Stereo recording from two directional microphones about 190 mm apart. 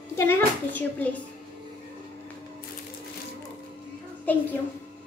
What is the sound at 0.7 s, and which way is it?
Speech, 10° left (ahead or behind).